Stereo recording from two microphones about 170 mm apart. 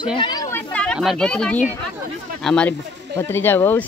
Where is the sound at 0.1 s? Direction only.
25° left (ahead or behind); by 0.9 s 10° left (ahead or behind).